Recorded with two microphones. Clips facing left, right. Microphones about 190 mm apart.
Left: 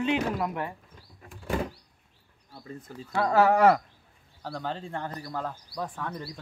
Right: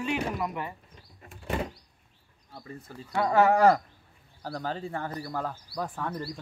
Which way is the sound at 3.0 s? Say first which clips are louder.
Even; 5° right (ahead or behind).